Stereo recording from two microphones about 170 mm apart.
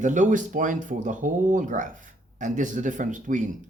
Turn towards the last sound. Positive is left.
turn(degrees=-50)  # may be behind; listen again after turning